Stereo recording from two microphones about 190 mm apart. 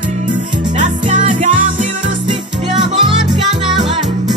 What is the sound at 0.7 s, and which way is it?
Music, 40° right (ahead or behind).